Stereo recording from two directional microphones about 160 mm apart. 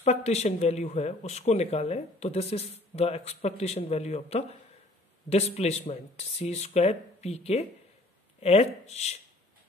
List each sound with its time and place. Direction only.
0.0 s speech: 40° left (ahead or behind)